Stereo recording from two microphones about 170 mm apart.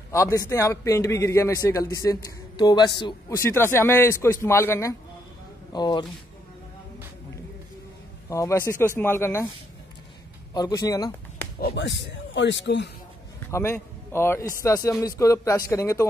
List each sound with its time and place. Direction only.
0.1 s a man's voice: 20° left (ahead or behind)
8.3 s a man's voice: 15° left (ahead or behind)
10.5 s speech: 25° left (ahead or behind)
11.6 s speech: 90° left
13.5 s a man's voice: 15° left (ahead or behind)